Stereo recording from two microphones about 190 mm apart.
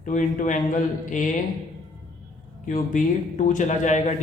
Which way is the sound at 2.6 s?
45° left (ahead or behind).